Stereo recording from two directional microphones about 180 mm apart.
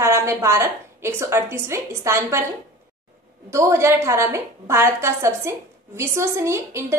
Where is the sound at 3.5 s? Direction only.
15° right (ahead or behind).